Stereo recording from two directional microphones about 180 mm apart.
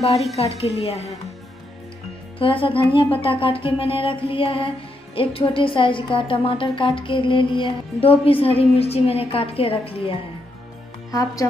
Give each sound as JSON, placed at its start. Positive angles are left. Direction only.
{"t": 0.4, "sound": "music", "side_deg": 35}
{"t": 2.3, "sound": "speech", "side_deg": 30}
{"t": 3.2, "sound": "music", "side_deg": 30}
{"t": 11.1, "sound": "speech", "side_deg": 20}